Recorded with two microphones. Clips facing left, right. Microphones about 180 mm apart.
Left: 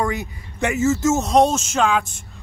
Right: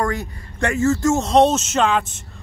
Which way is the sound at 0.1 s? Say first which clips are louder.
Right 1 dB; 20° left (ahead or behind).